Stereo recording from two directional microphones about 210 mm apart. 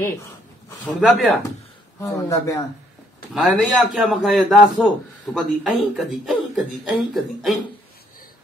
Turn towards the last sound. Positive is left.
turn(degrees=0)  # may be behind; listen again after turning